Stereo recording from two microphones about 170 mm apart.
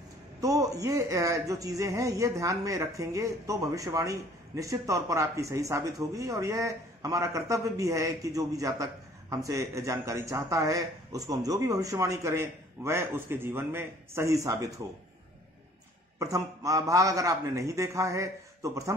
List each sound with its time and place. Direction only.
0.4 s a man's voice: 20° right (ahead or behind)
16.2 s a man's voice: 20° right (ahead or behind)